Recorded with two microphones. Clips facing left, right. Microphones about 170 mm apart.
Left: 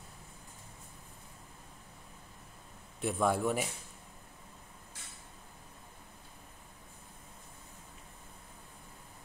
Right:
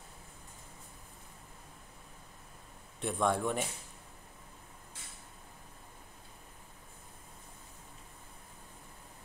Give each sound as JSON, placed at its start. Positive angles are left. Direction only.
{"t": 3.0, "sound": "a man's voice", "side_deg": 5}